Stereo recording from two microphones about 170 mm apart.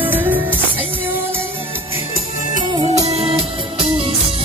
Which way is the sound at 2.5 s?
35° right (ahead or behind).